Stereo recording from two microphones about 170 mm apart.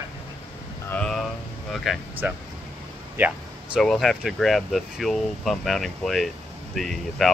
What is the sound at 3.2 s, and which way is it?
Speech, 10° right (ahead or behind).